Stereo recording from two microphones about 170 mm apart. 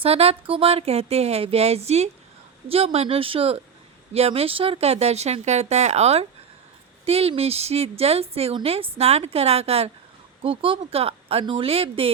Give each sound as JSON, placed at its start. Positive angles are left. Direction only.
{"t": 0.0, "sound": "a woman's voice", "side_deg": -35}